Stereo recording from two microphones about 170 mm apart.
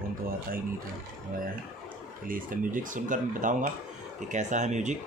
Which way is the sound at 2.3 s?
50° right (ahead or behind).